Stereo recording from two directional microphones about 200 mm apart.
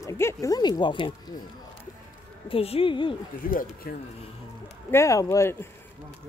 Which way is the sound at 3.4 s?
45° left (ahead or behind).